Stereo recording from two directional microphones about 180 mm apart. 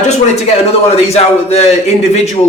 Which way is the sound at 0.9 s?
35° left (ahead or behind).